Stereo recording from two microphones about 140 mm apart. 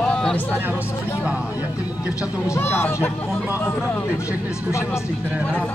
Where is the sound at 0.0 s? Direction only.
5° left (ahead or behind).